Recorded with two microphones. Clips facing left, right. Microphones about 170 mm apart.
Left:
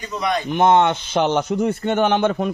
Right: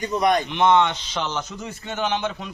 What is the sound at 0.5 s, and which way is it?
A man's voice, 50° left (ahead or behind).